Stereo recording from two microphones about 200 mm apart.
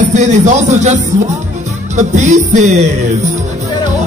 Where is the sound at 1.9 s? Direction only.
35° right (ahead or behind).